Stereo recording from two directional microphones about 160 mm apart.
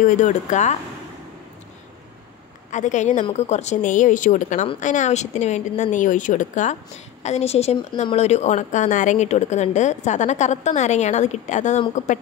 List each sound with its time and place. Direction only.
0.0 s a woman's voice: 50° left (ahead or behind)
2.7 s a woman's voice: 50° left (ahead or behind)